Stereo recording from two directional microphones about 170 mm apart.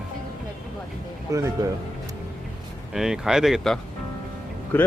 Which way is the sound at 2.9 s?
5° right (ahead or behind).